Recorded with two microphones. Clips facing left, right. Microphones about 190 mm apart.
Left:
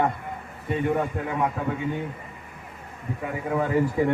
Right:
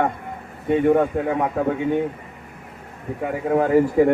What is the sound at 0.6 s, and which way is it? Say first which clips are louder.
Speech: right 8 dB; 60° right (ahead or behind).